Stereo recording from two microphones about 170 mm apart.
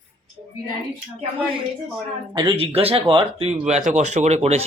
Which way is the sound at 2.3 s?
30° right (ahead or behind).